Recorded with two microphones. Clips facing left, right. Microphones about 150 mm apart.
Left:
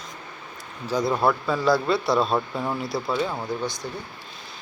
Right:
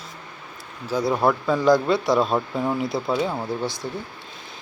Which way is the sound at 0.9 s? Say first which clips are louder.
Right 1 dB; 15° right (ahead or behind).